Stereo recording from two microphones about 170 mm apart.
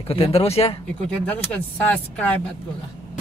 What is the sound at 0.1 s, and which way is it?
Speech, 35° left (ahead or behind).